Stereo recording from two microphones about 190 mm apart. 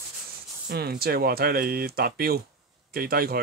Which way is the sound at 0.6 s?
55° right (ahead or behind).